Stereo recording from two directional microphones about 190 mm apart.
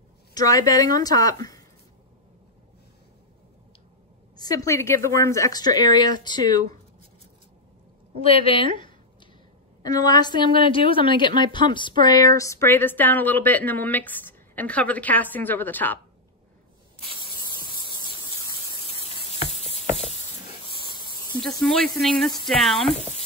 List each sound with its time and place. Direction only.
0.3 s speech: 20° left (ahead or behind)
4.4 s speech: 20° left (ahead or behind)
8.2 s speech: 30° left (ahead or behind); by 16.0 s 10° left (ahead or behind)
18.5 s a sound: 25° left (ahead or behind)
21.5 s speech: centre (ahead or behind)